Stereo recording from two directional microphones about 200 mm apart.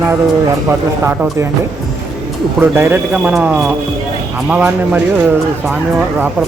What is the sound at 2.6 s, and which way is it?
Speech, 10° right (ahead or behind).